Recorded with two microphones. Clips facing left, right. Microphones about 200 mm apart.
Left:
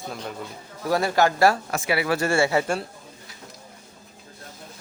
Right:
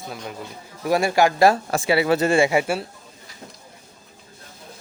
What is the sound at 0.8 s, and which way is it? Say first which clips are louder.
Speech: right 2 dB; 15° right (ahead or behind).